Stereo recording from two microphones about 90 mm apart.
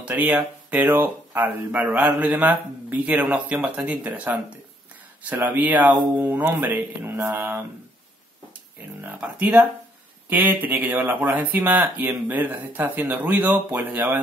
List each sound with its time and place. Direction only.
0.0 s speech: 20° right (ahead or behind)
9.0 s speech: 20° right (ahead or behind)